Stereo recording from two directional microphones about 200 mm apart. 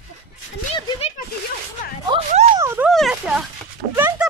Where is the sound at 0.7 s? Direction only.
25° left (ahead or behind).